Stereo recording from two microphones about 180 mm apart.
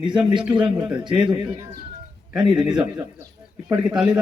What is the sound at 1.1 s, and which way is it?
Speech, 5° right (ahead or behind).